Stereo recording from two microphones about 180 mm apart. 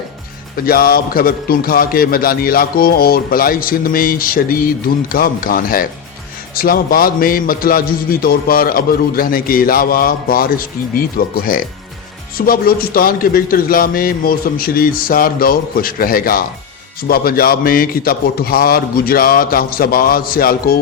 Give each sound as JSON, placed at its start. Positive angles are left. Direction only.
{"t": 0.5, "sound": "a man's voice", "side_deg": 55}